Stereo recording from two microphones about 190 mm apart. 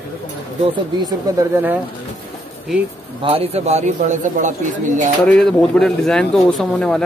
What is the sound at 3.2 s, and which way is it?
A man's voice, 30° right (ahead or behind).